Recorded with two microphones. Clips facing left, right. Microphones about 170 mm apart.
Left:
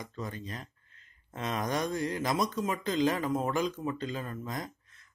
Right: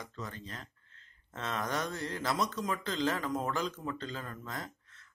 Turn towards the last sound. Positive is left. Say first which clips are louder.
# left 4 dB
turn(degrees=15)  # may be behind; listen again after turning